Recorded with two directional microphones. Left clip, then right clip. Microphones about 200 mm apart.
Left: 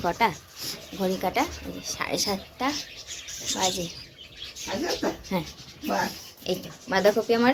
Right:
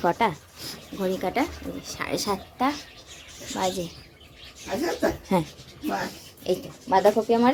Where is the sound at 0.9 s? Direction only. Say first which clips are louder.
Even; 30° right (ahead or behind).